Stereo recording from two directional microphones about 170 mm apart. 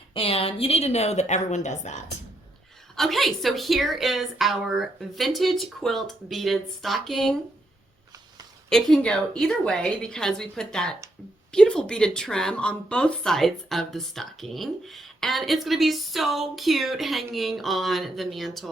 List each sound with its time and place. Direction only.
0.1 s a woman's voice: 35° left (ahead or behind)
2.9 s speech: centre (ahead or behind)
8.7 s speech: 5° left (ahead or behind)